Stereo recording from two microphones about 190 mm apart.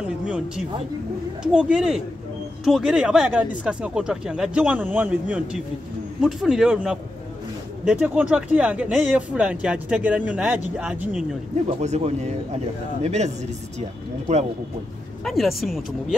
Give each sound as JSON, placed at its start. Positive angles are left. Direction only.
{"t": 0.0, "sound": "a sound", "side_deg": -5}
{"t": 1.4, "sound": "speech", "side_deg": -5}
{"t": 6.2, "sound": "speech", "side_deg": -5}
{"t": 11.8, "sound": "speech", "side_deg": -35}
{"t": 15.2, "sound": "speech", "side_deg": 0}